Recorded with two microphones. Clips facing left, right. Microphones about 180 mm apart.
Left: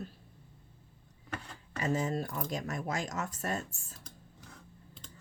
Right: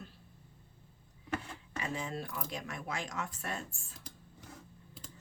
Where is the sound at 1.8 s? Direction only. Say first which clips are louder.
Left 7 dB; 40° left (ahead or behind).